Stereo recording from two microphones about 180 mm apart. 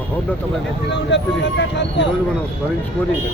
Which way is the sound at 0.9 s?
80° left.